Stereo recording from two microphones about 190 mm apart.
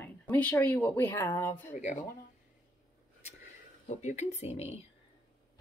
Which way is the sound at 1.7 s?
40° left (ahead or behind).